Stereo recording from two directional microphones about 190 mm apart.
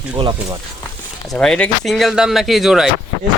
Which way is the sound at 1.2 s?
5° left (ahead or behind).